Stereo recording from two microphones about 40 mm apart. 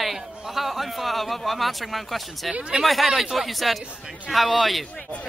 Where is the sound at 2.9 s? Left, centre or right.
Centre.